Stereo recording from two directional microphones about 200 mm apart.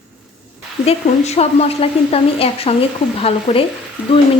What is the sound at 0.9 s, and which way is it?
A woman's voice, 30° left (ahead or behind).